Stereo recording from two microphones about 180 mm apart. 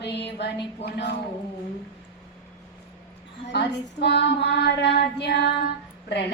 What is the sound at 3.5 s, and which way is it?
A woman's voice, 70° left (ahead or behind).